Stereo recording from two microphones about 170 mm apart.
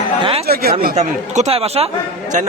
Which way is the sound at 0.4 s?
65° right (ahead or behind).